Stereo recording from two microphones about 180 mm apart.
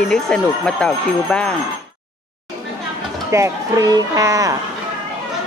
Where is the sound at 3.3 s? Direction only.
15° right (ahead or behind).